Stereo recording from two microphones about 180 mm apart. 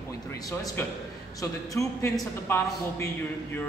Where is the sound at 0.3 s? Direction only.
20° left (ahead or behind).